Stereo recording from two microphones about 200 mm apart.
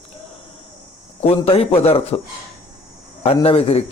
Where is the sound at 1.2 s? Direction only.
30° left (ahead or behind).